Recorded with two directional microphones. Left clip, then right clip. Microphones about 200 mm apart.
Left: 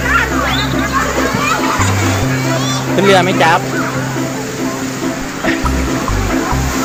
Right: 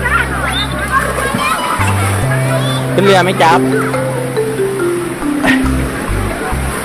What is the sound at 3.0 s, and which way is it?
Speech, 15° right (ahead or behind).